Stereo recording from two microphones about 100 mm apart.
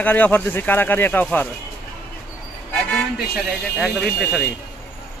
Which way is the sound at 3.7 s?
10° left (ahead or behind).